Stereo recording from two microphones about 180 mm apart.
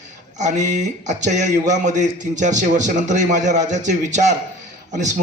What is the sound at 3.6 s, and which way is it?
Speech, 40° right (ahead or behind).